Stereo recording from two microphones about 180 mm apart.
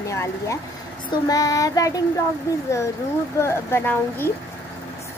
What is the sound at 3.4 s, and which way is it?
Speech, 15° left (ahead or behind).